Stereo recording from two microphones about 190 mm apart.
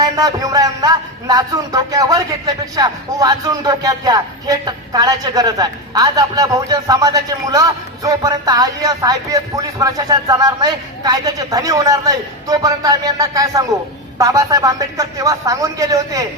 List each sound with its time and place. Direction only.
0.0 s a man's voice: 20° right (ahead or behind)